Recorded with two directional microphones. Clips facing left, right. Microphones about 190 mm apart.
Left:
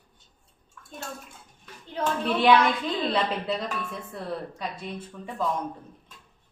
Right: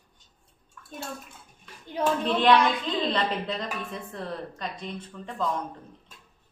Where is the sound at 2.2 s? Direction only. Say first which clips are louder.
Left 2 dB; 10° left (ahead or behind).